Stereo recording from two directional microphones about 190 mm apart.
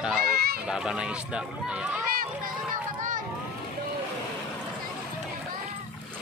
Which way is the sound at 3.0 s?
45° right (ahead or behind).